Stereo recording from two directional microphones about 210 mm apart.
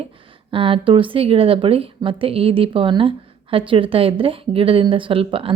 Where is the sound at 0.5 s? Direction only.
25° right (ahead or behind).